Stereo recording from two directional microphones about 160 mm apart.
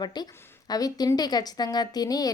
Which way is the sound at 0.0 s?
25° left (ahead or behind).